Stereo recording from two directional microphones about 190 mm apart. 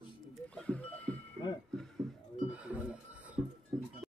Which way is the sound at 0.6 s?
5° left (ahead or behind).